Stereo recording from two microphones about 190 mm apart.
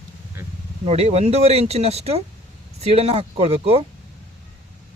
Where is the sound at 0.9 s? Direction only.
35° right (ahead or behind).